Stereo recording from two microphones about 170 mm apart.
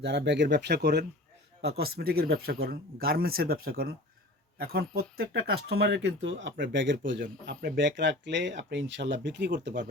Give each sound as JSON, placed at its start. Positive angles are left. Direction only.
{"t": 0.0, "sound": "speech", "side_deg": -85}